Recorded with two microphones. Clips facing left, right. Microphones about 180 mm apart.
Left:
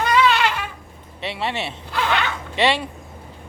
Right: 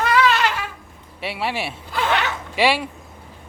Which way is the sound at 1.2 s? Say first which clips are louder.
Even; 5° right (ahead or behind).